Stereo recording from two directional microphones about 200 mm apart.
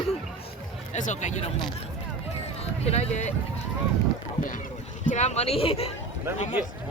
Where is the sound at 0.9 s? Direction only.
35° left (ahead or behind).